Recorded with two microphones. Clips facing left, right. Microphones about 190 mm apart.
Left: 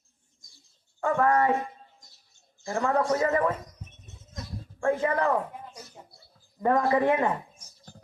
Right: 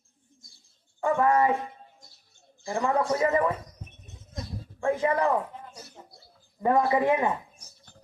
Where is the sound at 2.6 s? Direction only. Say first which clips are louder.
Even; 15° right (ahead or behind).